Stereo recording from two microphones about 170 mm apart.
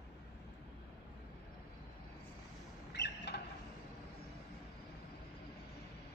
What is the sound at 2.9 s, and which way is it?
Rodents, 85° left.